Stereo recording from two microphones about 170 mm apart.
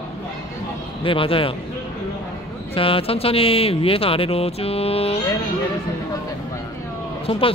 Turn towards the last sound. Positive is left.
turn(degrees=35)  # may be behind; listen again after turning